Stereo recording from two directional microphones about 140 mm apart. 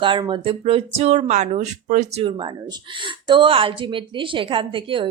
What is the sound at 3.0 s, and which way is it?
Speech, 35° right (ahead or behind).